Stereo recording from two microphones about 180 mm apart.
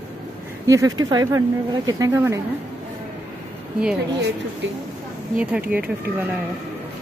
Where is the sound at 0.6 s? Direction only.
20° right (ahead or behind).